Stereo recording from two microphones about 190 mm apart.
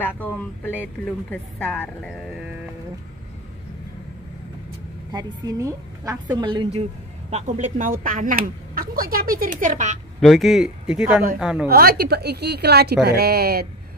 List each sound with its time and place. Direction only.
0.0 s speech: 10° left (ahead or behind)
5.1 s a woman's voice: 20° right (ahead or behind); by 9.9 s 40° right (ahead or behind)
10.2 s speech: centre (ahead or behind)
11.7 s a woman's voice: 55° right (ahead or behind)